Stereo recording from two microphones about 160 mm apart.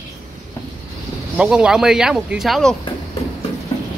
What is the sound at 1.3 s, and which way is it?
Speech, 5° right (ahead or behind).